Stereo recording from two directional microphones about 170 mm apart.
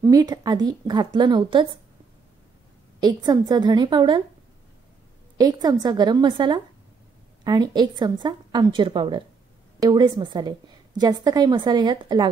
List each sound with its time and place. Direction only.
0.0 s a woman's voice: 20° right (ahead or behind)
3.0 s a woman's voice: 25° right (ahead or behind)
5.4 s a woman's voice: 20° right (ahead or behind)